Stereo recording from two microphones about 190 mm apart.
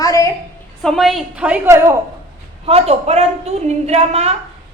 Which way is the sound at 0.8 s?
Centre (ahead or behind).